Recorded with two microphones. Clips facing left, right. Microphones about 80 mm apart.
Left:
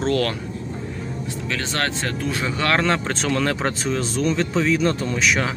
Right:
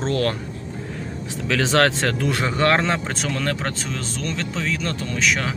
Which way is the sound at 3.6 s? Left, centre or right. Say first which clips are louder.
Left 5 dB; centre.